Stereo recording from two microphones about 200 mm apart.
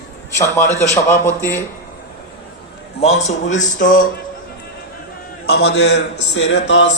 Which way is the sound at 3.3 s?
70° left (ahead or behind).